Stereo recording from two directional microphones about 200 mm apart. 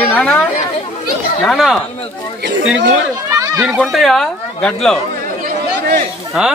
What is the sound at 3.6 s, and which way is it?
Speech, centre (ahead or behind).